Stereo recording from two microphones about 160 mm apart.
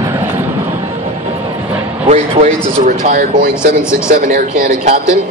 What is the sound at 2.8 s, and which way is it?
Speech, 55° right (ahead or behind).